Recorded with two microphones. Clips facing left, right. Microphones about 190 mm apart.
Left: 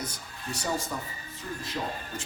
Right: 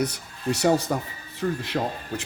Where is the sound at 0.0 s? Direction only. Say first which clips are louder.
Right 11 dB; 70° right (ahead or behind).